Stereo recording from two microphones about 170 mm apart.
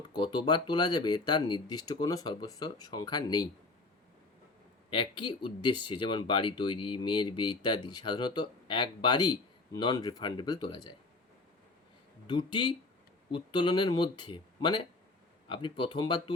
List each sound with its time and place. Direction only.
0.1 s speech: 25° left (ahead or behind)
4.9 s speech: 30° left (ahead or behind)
12.3 s speech: 30° left (ahead or behind)